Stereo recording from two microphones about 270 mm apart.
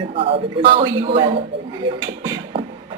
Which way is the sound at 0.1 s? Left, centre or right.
Centre.